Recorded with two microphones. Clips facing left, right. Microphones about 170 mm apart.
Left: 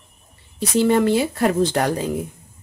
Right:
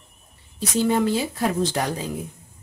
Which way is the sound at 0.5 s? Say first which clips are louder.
Left 4 dB; 70° left (ahead or behind).